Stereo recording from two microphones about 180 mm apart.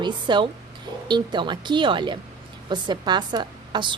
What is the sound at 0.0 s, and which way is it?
A woman's voice, 25° right (ahead or behind).